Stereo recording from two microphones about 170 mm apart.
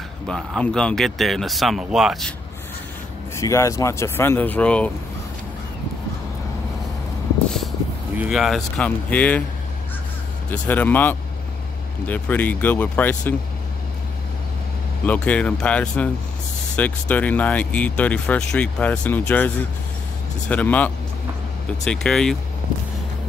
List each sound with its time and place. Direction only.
0.3 s speech: 5° left (ahead or behind)
3.3 s speech: 15° left (ahead or behind)
8.2 s speech: centre (ahead or behind)
10.5 s speech: 10° left (ahead or behind)
15.0 s speech: 10° left (ahead or behind)